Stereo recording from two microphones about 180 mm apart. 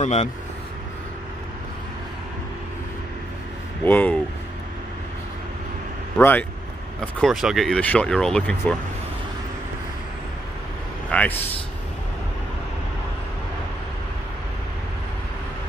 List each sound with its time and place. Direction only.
0.0 s speech: 40° left (ahead or behind)
3.8 s speech: 10° left (ahead or behind)
6.1 s speech: 10° left (ahead or behind)
11.1 s speech: 10° left (ahead or behind)